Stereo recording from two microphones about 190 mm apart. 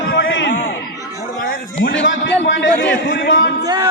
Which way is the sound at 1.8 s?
80° left.